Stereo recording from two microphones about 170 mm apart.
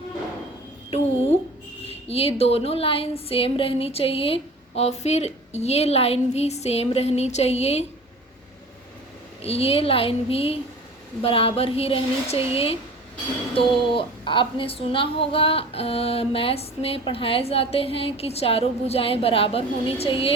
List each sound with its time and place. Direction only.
0.9 s a sound: 40° left (ahead or behind)
2.0 s a woman's voice: 35° left (ahead or behind)
9.4 s a woman's voice: 35° left (ahead or behind)